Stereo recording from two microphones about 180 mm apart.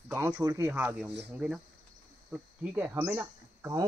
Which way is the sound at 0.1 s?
10° right (ahead or behind).